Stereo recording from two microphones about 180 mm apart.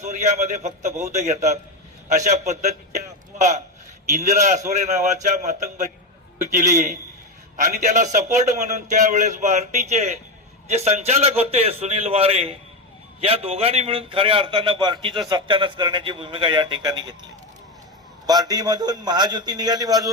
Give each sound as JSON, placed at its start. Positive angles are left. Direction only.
{"t": 0.0, "sound": "a man's voice", "side_deg": -40}
{"t": 18.3, "sound": "a man's voice", "side_deg": -20}